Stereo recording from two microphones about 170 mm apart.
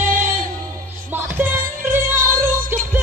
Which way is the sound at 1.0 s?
10° right (ahead or behind).